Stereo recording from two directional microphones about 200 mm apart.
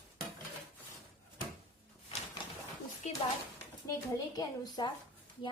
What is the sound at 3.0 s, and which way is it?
Speech, 35° left (ahead or behind).